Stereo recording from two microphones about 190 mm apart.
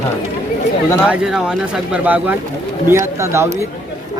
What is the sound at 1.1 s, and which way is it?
Speech, 5° right (ahead or behind).